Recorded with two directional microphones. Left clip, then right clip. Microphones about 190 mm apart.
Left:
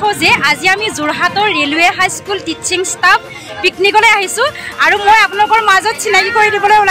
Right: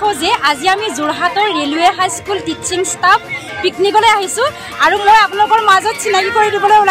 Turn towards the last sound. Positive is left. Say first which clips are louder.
# left 1 dB
turn(degrees=15)  # may be behind; listen again after turning